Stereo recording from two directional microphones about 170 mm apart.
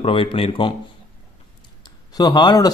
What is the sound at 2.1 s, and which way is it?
Speech, 25° left (ahead or behind).